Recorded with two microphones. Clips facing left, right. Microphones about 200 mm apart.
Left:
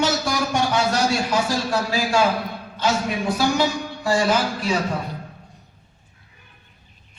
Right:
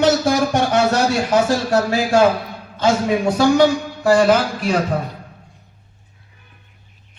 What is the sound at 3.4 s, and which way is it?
A man's voice, 55° right (ahead or behind).